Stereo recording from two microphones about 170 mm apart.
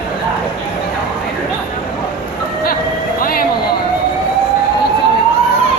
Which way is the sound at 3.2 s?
60° left (ahead or behind).